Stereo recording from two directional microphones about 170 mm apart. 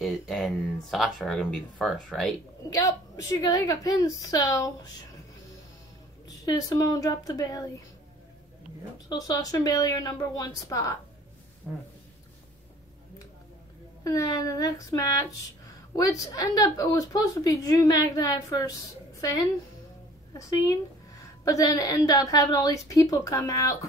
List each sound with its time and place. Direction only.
0.0 s speech: centre (ahead or behind)
2.7 s a woman's voice: 20° left (ahead or behind)
6.2 s a woman's voice: 20° left (ahead or behind)
9.1 s a woman's voice: 20° left (ahead or behind)
11.7 s speech: 5° right (ahead or behind)
14.0 s a woman's voice: 20° left (ahead or behind)
20.3 s a woman's voice: 20° left (ahead or behind)